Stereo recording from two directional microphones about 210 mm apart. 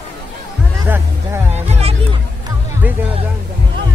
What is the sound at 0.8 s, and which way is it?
Music, 10° right (ahead or behind).